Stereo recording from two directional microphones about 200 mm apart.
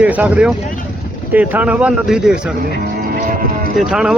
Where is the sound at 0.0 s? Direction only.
5° right (ahead or behind).